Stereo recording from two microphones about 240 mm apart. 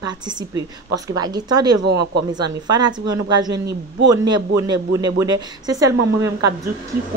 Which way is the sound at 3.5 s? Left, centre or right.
Right.